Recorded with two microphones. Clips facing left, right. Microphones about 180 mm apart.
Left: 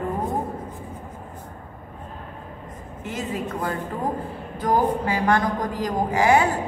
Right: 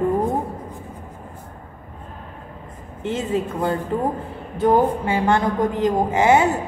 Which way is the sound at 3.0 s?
25° right (ahead or behind).